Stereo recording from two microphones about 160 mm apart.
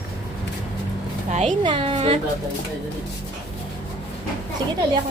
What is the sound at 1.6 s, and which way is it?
Speech, 30° right (ahead or behind).